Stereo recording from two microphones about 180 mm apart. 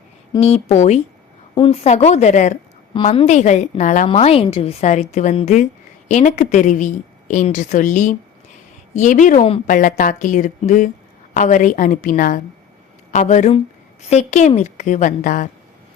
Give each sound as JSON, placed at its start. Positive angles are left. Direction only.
{"t": 0.3, "sound": "a woman's voice", "side_deg": 35}